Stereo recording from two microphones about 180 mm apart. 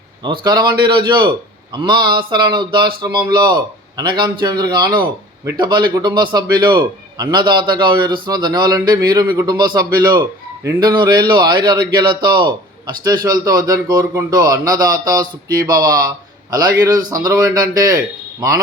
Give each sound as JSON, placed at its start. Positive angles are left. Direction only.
{"t": 0.3, "sound": "a man's voice", "side_deg": -25}